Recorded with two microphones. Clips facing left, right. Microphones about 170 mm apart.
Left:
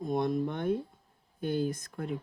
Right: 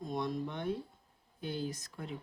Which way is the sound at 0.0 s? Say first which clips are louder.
Left 7 dB; 55° left (ahead or behind).